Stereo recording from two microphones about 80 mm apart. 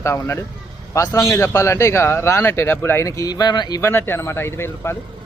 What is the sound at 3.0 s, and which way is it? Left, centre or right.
Speech, left.